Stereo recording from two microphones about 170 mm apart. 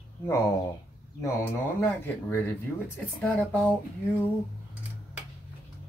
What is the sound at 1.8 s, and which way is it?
Speech, 10° left (ahead or behind).